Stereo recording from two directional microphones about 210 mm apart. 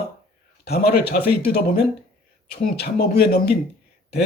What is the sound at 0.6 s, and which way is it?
Speech, 50° left (ahead or behind).